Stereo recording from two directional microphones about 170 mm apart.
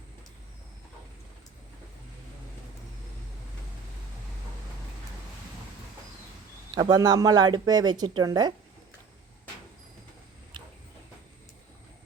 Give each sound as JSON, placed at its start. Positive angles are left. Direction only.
{"t": 6.7, "sound": "speech", "side_deg": -25}